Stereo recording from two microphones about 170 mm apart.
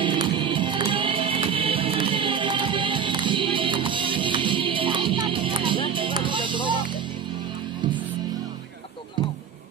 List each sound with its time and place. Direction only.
0.0 s music: 30° right (ahead or behind)